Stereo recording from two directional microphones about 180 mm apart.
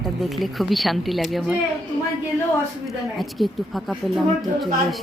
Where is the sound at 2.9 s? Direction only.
Centre (ahead or behind).